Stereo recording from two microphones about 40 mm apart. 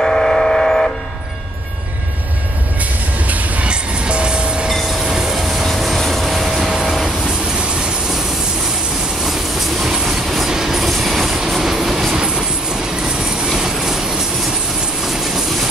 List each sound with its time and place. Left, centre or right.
0.0 s vehicle: centre
3.3 s train: right
3.6 s train: right
4.8 s vehicle: centre
6.7 s train: centre
7.6 s train: right
9.2 s train: centre
11.2 s train: centre
12.2 s train: centre